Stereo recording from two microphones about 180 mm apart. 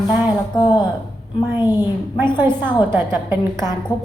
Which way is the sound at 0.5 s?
25° left (ahead or behind).